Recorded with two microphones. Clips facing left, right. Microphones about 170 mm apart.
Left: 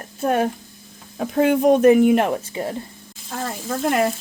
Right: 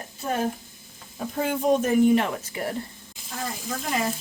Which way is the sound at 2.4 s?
20° left (ahead or behind).